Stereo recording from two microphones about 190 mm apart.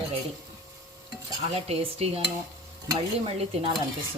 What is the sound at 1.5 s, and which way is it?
A woman's voice, 30° right (ahead or behind).